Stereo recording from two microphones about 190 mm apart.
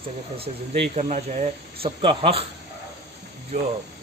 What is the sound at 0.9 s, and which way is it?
Speech, 40° right (ahead or behind).